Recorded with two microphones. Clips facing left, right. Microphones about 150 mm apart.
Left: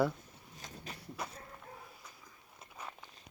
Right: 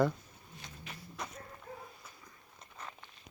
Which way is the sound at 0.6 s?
40° left (ahead or behind).